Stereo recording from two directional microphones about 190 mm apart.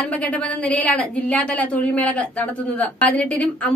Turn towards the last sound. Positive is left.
turn(degrees=5)  # may be behind; listen again after turning